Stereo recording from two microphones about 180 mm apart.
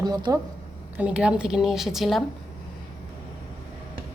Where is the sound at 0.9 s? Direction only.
5° right (ahead or behind).